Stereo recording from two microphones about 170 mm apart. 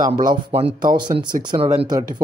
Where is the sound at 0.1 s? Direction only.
30° right (ahead or behind).